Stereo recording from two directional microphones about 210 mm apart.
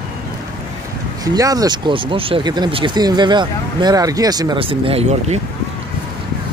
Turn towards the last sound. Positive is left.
turn(degrees=-25)  # may be behind; listen again after turning